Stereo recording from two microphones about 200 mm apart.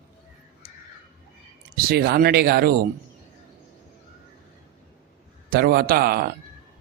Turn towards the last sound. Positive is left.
turn(degrees=-50)  # may be behind; listen again after turning